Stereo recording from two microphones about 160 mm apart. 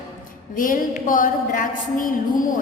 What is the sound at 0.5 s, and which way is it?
A woman's voice, 60° left (ahead or behind).